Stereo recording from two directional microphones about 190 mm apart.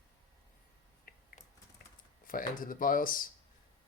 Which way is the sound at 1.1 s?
50° left (ahead or behind).